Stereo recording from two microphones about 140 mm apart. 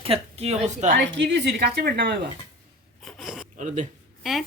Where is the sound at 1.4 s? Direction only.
90° right.